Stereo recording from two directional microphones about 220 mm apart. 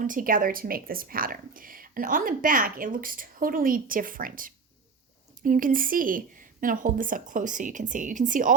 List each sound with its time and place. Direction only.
0.0 s a woman's voice: 40° right (ahead or behind)